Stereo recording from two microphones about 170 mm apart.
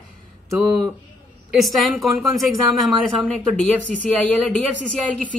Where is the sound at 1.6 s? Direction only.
Centre (ahead or behind).